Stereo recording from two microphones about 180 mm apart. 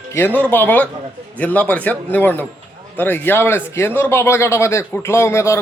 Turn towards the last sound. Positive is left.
turn(degrees=15)  # may be behind; listen again after turning